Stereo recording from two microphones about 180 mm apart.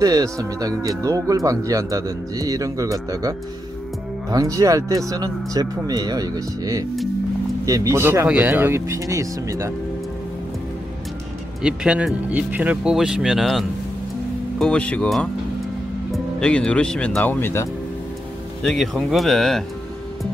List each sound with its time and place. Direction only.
0.0 s livestock: 20° right (ahead or behind)
7.6 s speech: 20° right (ahead or behind)
11.6 s speech: 5° right (ahead or behind)